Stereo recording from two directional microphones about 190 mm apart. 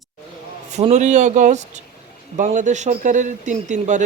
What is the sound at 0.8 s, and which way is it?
A man's voice, 35° right (ahead or behind).